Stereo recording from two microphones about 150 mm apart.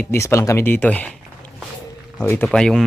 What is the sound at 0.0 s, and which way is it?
Speech, 15° left (ahead or behind).